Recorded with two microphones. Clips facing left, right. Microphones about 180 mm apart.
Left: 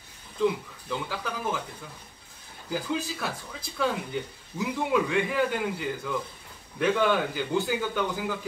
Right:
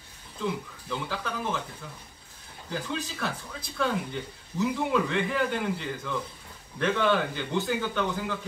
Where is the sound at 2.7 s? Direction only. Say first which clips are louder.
Left 3 dB; 10° left (ahead or behind).